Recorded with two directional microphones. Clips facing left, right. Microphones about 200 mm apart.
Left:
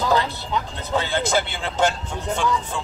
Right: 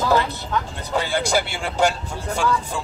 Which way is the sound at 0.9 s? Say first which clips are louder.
Even; 10° right (ahead or behind).